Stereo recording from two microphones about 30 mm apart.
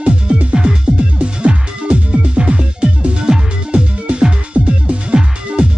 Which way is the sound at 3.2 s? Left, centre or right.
Right.